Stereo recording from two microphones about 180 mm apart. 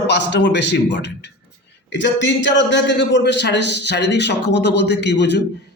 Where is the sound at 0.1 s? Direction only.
75° left (ahead or behind).